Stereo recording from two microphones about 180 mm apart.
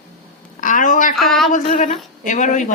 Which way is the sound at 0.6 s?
45° left (ahead or behind).